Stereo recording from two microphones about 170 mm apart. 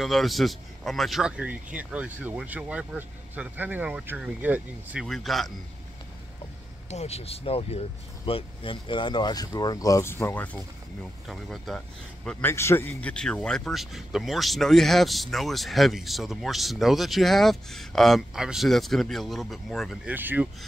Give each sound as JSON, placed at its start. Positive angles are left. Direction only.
{"t": 0.0, "sound": "speech", "side_deg": 0}
{"t": 6.9, "sound": "speech", "side_deg": 40}
{"t": 20.2, "sound": "speech", "side_deg": -10}